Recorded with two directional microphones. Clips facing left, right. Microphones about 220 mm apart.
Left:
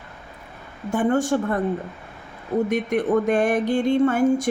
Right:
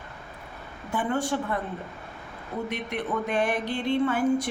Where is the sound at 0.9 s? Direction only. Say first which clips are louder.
Left 7 dB; 45° left (ahead or behind).